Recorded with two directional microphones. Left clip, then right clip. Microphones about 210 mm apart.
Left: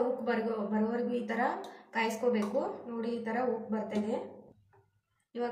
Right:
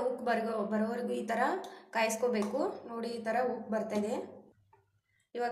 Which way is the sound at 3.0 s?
50° right (ahead or behind).